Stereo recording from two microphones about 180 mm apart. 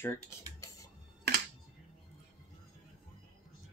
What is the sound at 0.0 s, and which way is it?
Speech, 15° left (ahead or behind).